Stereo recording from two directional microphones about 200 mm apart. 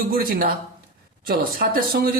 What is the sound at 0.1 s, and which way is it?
A man's voice, 45° right (ahead or behind).